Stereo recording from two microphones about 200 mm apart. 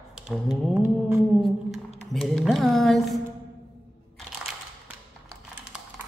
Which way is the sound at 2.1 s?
Centre (ahead or behind).